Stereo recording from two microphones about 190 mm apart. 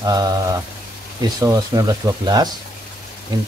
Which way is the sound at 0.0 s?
20° right (ahead or behind).